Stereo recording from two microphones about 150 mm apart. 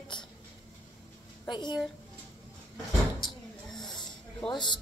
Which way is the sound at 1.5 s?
30° left (ahead or behind).